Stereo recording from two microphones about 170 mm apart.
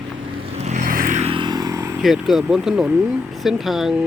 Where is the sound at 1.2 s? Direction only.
30° right (ahead or behind).